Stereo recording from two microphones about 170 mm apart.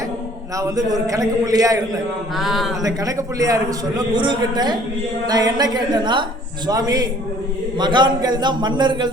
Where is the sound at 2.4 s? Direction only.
Centre (ahead or behind).